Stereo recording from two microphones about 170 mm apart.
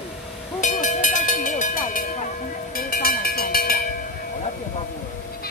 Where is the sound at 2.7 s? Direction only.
60° left (ahead or behind).